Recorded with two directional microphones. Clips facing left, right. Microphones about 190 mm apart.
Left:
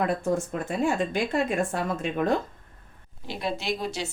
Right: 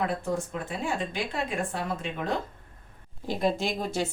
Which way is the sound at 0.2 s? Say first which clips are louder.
Left 4 dB; 45° left (ahead or behind).